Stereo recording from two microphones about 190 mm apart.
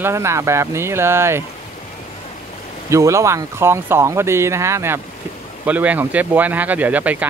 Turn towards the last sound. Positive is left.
turn(degrees=-10)  # may be behind; listen again after turning